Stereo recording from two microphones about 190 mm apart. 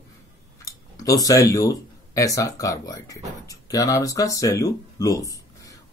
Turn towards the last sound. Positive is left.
turn(degrees=15)  # may be behind; listen again after turning